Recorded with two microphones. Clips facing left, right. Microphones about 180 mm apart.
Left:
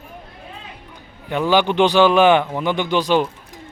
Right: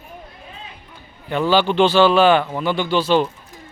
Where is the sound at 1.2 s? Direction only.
15° left (ahead or behind).